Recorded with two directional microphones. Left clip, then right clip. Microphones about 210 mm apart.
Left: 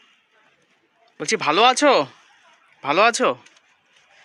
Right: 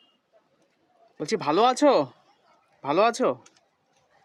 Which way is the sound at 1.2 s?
5° right (ahead or behind).